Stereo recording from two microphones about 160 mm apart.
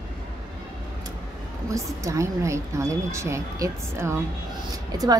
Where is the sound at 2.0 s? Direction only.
20° right (ahead or behind).